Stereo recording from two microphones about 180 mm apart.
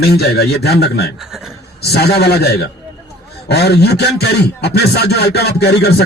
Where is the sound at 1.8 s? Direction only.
65° left (ahead or behind).